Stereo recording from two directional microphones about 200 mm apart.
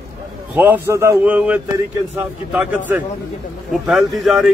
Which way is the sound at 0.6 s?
10° right (ahead or behind).